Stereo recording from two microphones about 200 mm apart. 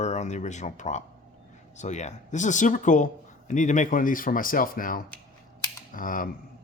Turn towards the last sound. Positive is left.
turn(degrees=45)  # may be behind; listen again after turning